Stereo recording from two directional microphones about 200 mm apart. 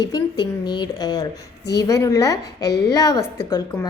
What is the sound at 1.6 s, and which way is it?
Speech, 55° left (ahead or behind).